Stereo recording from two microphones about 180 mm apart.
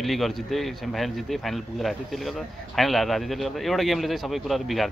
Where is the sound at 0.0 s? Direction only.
Centre (ahead or behind).